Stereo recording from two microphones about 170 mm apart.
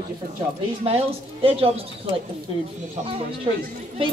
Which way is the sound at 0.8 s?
35° right (ahead or behind).